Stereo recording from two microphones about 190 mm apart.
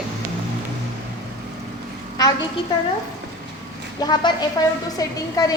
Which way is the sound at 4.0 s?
20° left (ahead or behind).